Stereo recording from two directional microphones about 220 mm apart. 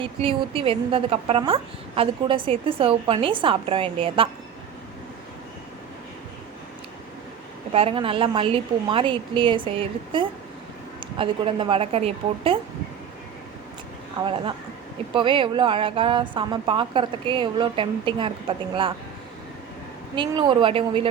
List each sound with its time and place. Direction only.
0.0 s a woman's voice: 25° right (ahead or behind)
7.7 s a woman's voice: 25° right (ahead or behind)
14.2 s a woman's voice: 20° right (ahead or behind)
20.1 s a woman's voice: 20° right (ahead or behind)